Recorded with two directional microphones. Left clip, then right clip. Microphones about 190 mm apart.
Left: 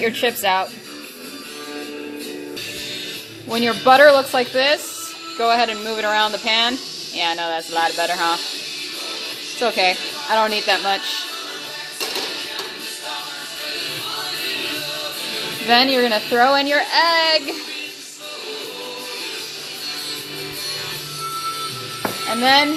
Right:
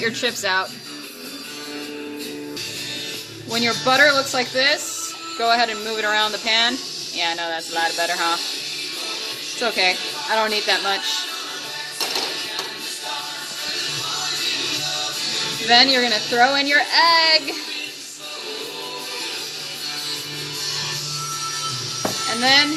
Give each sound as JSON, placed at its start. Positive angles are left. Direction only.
{"t": 0.0, "sound": "speech", "side_deg": 10}
{"t": 3.5, "sound": "speech", "side_deg": 10}
{"t": 9.6, "sound": "speech", "side_deg": 10}
{"t": 15.7, "sound": "speech", "side_deg": 15}